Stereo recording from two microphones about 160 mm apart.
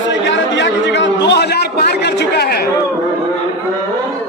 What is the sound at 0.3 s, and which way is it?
Chatter, 90° left.